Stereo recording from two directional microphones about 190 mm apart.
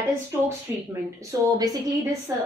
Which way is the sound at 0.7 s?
15° right (ahead or behind).